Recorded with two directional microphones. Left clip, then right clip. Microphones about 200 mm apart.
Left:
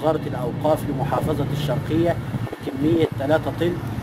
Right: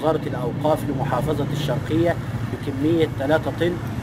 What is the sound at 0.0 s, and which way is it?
Speech, centre (ahead or behind).